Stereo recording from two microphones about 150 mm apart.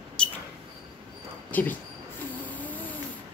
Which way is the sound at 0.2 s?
5° left (ahead or behind).